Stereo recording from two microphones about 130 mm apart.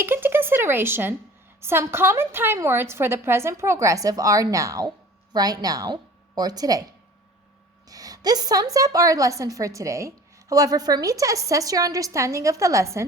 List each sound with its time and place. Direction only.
0.0 s a sound: 15° right (ahead or behind)
1.6 s a woman's voice: 20° right (ahead or behind)
7.9 s a woman's voice: 30° right (ahead or behind)